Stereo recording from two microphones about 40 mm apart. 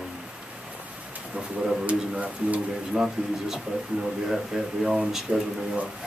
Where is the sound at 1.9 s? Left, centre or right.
Right.